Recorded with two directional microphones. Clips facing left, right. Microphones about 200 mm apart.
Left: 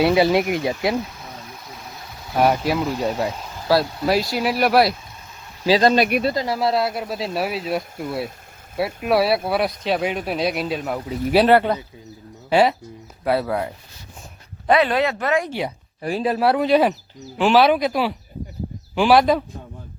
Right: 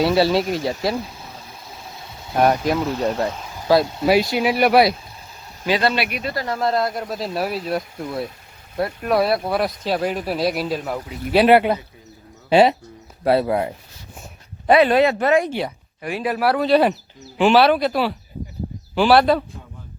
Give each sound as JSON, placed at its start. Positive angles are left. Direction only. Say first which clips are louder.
{"t": 0.0, "sound": "speech", "louder": "left 1 dB", "side_deg": 15}
{"t": 2.4, "sound": "speech", "louder": "right 1 dB", "side_deg": 5}
{"t": 3.2, "sound": "a sound", "louder": "right 2 dB", "side_deg": 0}
{"t": 4.0, "sound": "speech", "louder": "right 3 dB", "side_deg": 0}
{"t": 5.6, "sound": "speech", "louder": "left 4 dB", "side_deg": 35}
{"t": 6.3, "sound": "speech", "louder": "left 2 dB", "side_deg": 15}
{"t": 6.6, "sound": "speech", "louder": "even", "side_deg": 5}
{"t": 11.4, "sound": "speech", "louder": "right 4 dB", "side_deg": -10}
{"t": 12.5, "sound": "speech", "louder": "right 3 dB", "side_deg": -25}
{"t": 14.8, "sound": "speech", "louder": "right 4 dB", "side_deg": -25}
{"t": 16.0, "sound": "speech", "louder": "left 2 dB", "side_deg": 35}
{"t": 17.3, "sound": "speech", "louder": "right 2 dB", "side_deg": 0}
{"t": 17.6, "sound": "speech", "louder": "even", "side_deg": 10}